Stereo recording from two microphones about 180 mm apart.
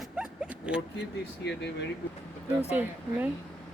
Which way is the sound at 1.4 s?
70° left (ahead or behind).